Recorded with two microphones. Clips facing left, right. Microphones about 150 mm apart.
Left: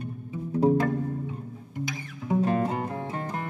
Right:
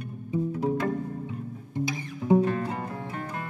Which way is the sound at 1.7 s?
30° right (ahead or behind).